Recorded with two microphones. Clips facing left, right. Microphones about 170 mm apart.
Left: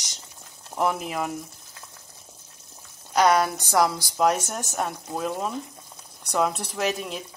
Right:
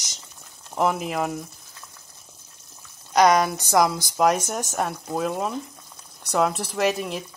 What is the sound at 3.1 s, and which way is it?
Speech, 10° right (ahead or behind).